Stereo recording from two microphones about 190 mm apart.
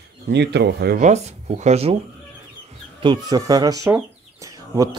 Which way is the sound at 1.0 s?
35° right (ahead or behind).